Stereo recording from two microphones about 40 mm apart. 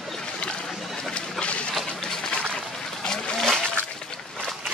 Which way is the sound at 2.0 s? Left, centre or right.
Centre.